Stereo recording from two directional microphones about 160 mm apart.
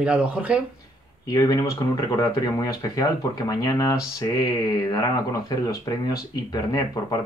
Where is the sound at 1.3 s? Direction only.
25° left (ahead or behind).